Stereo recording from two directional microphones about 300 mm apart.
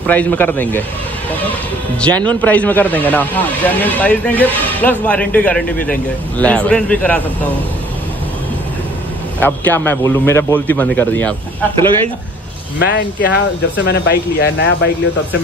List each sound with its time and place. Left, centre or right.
0.0 s a man's voice: centre
2.0 s speech: centre
9.4 s a man's voice: centre
12.7 s speech: left